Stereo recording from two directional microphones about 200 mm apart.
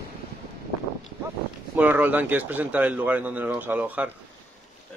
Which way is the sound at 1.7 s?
10° right (ahead or behind).